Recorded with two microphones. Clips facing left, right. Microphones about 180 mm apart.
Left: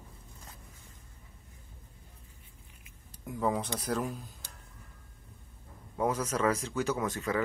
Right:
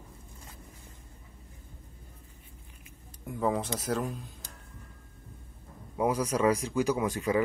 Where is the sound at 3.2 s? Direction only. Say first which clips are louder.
Right 2 dB; centre (ahead or behind).